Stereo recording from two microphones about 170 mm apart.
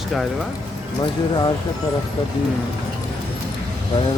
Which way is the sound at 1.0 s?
25° left (ahead or behind).